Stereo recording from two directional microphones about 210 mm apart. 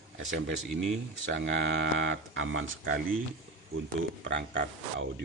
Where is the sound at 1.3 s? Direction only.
60° right (ahead or behind).